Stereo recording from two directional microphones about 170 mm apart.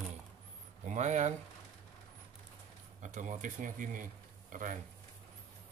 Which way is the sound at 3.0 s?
50° right (ahead or behind).